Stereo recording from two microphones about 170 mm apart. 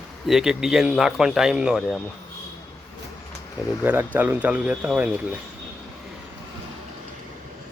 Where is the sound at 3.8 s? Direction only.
10° right (ahead or behind).